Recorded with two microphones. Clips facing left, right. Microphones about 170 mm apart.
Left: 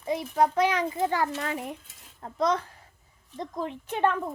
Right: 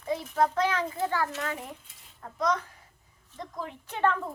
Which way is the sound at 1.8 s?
45° left (ahead or behind).